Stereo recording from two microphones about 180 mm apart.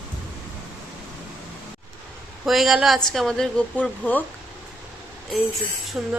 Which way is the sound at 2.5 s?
Centre (ahead or behind).